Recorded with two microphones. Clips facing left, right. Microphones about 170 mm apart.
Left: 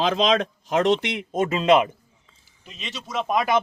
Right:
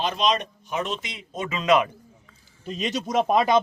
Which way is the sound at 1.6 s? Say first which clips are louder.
Left 2 dB; 25° left (ahead or behind).